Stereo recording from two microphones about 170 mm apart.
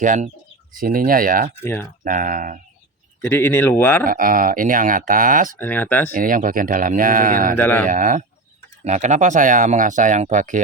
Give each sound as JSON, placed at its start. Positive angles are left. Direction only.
{"t": 0.0, "sound": "speech", "side_deg": -50}
{"t": 1.6, "sound": "speech", "side_deg": 15}
{"t": 2.0, "sound": "speech", "side_deg": -50}
{"t": 3.2, "sound": "speech", "side_deg": 15}
{"t": 4.0, "sound": "speech", "side_deg": -55}
{"t": 5.5, "sound": "speech", "side_deg": 10}
{"t": 6.1, "sound": "speech", "side_deg": -55}
{"t": 7.5, "sound": "speech", "side_deg": 10}
{"t": 7.9, "sound": "speech", "side_deg": -50}